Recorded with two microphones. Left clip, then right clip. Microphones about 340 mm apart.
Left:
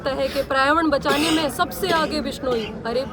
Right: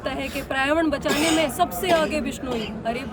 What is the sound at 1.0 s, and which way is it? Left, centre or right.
Speech, right.